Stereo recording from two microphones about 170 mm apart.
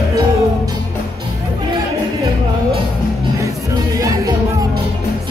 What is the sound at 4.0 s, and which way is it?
Music, 20° right (ahead or behind).